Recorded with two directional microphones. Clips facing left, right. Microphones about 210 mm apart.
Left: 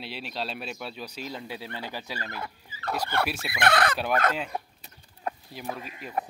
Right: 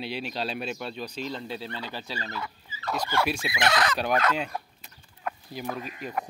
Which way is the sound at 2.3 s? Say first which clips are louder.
Right 1 dB; 55° left (ahead or behind).